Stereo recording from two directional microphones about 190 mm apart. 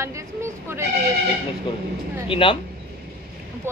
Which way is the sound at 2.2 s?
25° left (ahead or behind).